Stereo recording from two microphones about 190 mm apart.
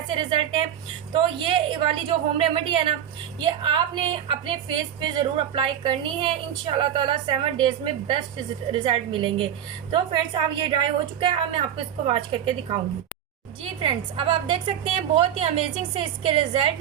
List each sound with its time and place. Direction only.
0.2 s a woman's voice: 25° right (ahead or behind)
13.8 s a woman's voice: 30° right (ahead or behind)